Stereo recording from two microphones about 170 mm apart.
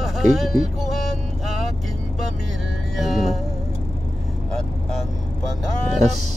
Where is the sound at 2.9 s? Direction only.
Centre (ahead or behind).